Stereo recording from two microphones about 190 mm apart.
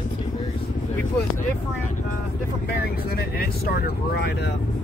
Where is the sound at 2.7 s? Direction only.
55° left (ahead or behind).